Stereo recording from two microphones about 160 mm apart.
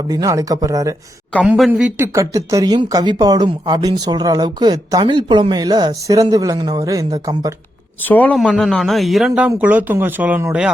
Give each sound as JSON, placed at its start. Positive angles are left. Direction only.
{"t": 0.1, "sound": "speech", "side_deg": -20}
{"t": 1.5, "sound": "speech", "side_deg": 0}
{"t": 2.0, "sound": "speech", "side_deg": -20}
{"t": 8.0, "sound": "speech", "side_deg": 10}